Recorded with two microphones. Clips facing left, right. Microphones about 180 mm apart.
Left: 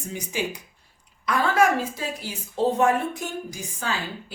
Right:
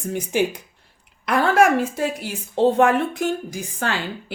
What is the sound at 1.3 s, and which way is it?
A woman's voice, 65° right (ahead or behind).